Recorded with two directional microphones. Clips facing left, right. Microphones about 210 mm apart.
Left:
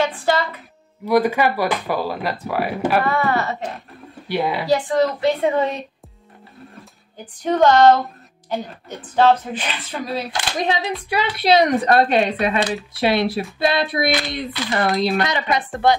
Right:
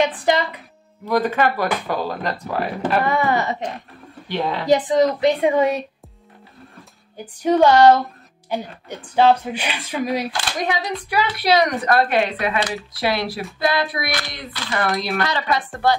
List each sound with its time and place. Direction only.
0.0 s music: 15° right (ahead or behind)
1.0 s speech: 10° left (ahead or behind)
3.0 s speech: 15° right (ahead or behind)
4.3 s speech: 10° left (ahead or behind)
4.6 s speech: 20° right (ahead or behind)
7.4 s speech: 10° right (ahead or behind)
10.3 s speech: 25° left (ahead or behind)